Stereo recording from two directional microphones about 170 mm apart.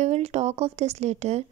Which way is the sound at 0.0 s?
40° right (ahead or behind).